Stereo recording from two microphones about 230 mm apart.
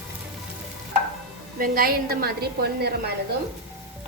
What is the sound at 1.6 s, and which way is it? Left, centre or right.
A woman's voice, right.